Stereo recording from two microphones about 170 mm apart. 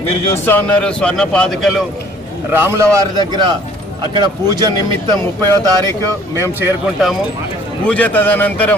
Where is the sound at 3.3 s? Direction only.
25° right (ahead or behind).